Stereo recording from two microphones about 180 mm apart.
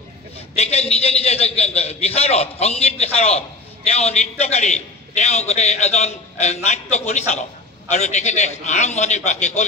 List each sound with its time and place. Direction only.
0.6 s a man's voice: 35° left (ahead or behind)